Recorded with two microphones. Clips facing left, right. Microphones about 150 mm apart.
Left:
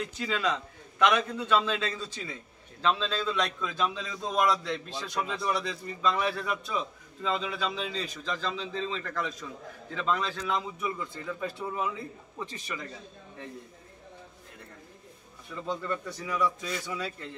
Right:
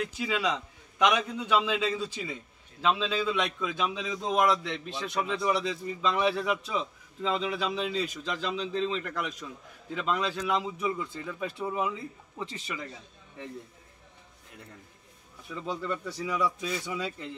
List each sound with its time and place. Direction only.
0.2 s a man's voice: 10° right (ahead or behind)
15.6 s a man's voice: 10° right (ahead or behind)